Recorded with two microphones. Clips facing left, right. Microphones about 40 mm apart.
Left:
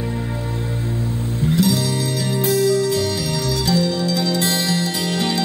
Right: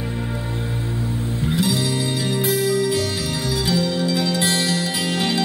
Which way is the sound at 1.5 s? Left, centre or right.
Centre.